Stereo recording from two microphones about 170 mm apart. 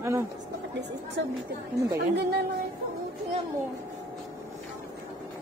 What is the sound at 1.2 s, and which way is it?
Speech, 90° right.